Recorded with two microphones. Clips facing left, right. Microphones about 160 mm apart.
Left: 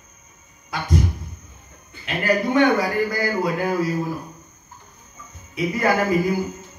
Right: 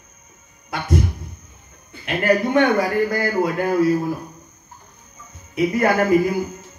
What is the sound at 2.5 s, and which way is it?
A man's voice, 55° right (ahead or behind).